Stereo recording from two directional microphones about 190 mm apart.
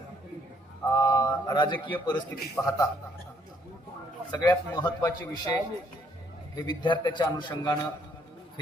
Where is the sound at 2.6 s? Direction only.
10° left (ahead or behind).